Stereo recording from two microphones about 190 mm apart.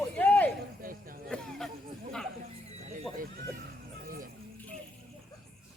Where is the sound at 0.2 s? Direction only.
10° left (ahead or behind).